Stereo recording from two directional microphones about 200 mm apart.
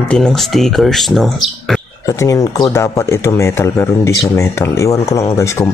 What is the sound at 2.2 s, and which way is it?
Speech, 15° left (ahead or behind).